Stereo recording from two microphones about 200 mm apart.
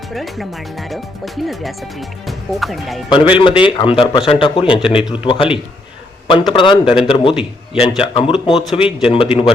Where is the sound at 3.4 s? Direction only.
25° left (ahead or behind).